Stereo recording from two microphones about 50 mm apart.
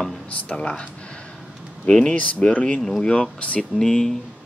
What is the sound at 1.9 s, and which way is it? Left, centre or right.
Speech, centre.